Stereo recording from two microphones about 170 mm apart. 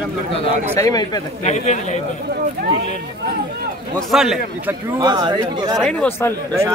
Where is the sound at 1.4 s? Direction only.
45° left (ahead or behind).